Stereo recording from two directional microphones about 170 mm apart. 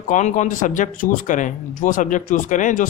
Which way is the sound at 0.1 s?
45° left (ahead or behind).